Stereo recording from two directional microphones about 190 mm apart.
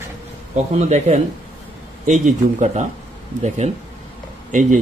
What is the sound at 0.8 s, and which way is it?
A man's voice, 35° right (ahead or behind).